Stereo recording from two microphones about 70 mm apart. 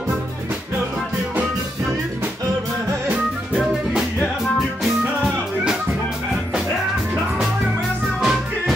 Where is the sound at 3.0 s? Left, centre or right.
Centre.